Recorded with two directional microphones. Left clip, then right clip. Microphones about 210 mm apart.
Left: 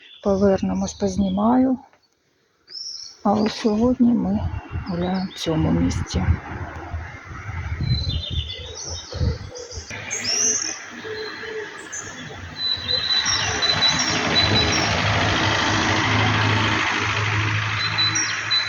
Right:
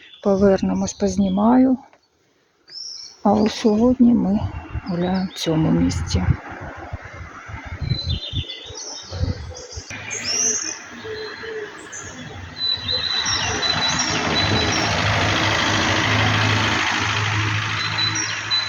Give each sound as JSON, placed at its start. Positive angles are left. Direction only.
{"t": 0.2, "sound": "speech", "side_deg": -20}
{"t": 3.2, "sound": "speech", "side_deg": -20}
{"t": 10.2, "sound": "bird", "side_deg": 5}
{"t": 13.1, "sound": "vehicle", "side_deg": 20}